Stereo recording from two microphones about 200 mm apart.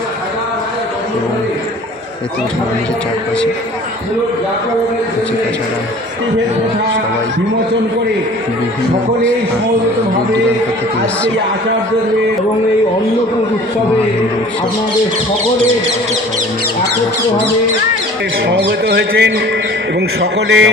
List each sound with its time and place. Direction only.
18.4 s speech: 55° right (ahead or behind)